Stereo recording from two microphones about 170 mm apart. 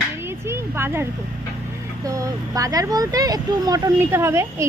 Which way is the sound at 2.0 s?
20° right (ahead or behind).